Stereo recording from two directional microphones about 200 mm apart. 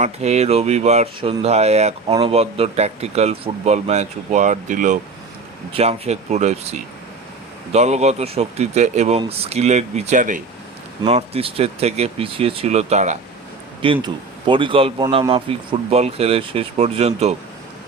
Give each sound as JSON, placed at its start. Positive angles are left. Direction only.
{"t": 0.0, "sound": "speech", "side_deg": -35}
{"t": 11.0, "sound": "speech", "side_deg": -30}